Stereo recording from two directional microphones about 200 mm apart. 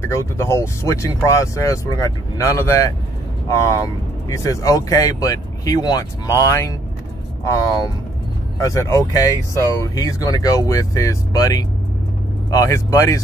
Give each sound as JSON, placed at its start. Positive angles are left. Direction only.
{"t": 0.0, "sound": "speech", "side_deg": 15}
{"t": 8.5, "sound": "speech", "side_deg": 15}